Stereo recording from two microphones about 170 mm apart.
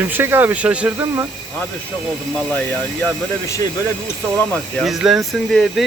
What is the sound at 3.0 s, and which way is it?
Speech, 20° left (ahead or behind).